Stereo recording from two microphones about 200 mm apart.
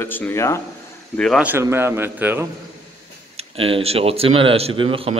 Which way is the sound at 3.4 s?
30° right (ahead or behind).